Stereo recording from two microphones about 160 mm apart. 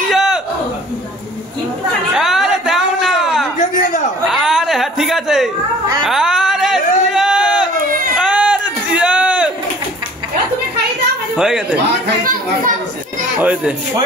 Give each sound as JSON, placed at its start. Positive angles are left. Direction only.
{"t": 0.1, "sound": "a sound", "side_deg": 0}
{"t": 2.1, "sound": "a sound", "side_deg": -5}
{"t": 8.2, "sound": "whoop", "side_deg": -5}
{"t": 11.3, "sound": "speech", "side_deg": -5}
{"t": 12.2, "sound": "speech", "side_deg": -60}
{"t": 13.4, "sound": "speech", "side_deg": -10}